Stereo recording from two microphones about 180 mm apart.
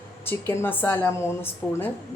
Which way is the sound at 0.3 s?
10° left (ahead or behind).